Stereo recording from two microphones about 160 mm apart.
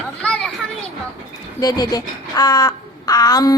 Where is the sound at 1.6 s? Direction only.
25° left (ahead or behind).